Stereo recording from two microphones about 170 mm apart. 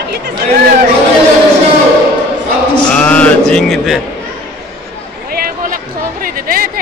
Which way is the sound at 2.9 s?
10° left (ahead or behind).